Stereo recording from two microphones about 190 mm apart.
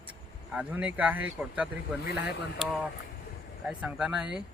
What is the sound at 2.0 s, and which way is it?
Speech, 65° left (ahead or behind).